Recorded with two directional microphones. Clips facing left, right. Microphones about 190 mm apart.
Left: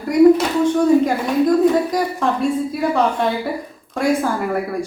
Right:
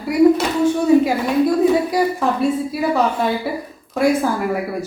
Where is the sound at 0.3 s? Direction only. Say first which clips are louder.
Left 1 dB; 5° right (ahead or behind).